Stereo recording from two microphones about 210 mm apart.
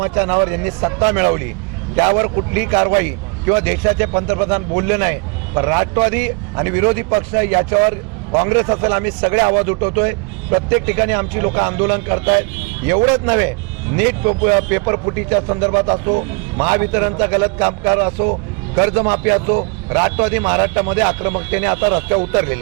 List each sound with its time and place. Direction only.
0.0 s a man's voice: 20° right (ahead or behind)
16.6 s a man's voice: 20° right (ahead or behind)
19.5 s a man's voice: 30° right (ahead or behind)